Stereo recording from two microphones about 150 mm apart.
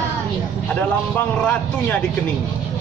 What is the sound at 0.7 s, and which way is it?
A man's voice, 10° left (ahead or behind).